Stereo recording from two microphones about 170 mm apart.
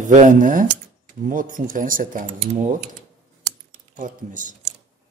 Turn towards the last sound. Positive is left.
turn(degrees=-50)  # may be behind; listen again after turning